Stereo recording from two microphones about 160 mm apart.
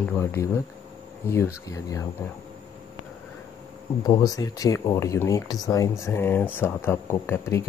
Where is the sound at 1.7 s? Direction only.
20° left (ahead or behind).